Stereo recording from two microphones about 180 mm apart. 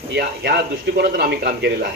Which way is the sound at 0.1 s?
65° right (ahead or behind).